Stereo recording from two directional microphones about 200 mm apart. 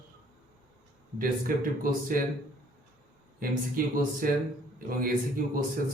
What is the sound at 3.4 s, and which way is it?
Speech, 45° right (ahead or behind).